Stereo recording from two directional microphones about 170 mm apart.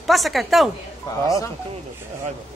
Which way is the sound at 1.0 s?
20° left (ahead or behind).